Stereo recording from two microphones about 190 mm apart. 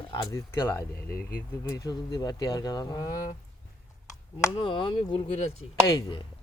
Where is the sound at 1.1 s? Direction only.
50° left (ahead or behind).